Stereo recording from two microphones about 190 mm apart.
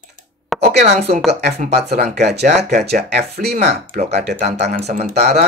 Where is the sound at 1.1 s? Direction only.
40° right (ahead or behind).